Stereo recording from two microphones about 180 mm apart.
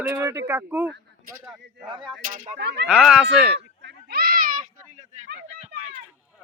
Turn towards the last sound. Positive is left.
turn(degrees=-40)  # may be behind; listen again after turning